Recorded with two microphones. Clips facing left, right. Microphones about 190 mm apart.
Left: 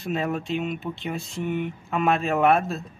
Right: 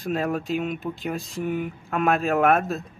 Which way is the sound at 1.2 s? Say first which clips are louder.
Right 1 dB; 40° right (ahead or behind).